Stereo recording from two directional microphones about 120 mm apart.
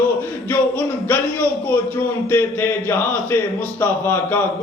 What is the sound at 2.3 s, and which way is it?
Speech, 20° left (ahead or behind).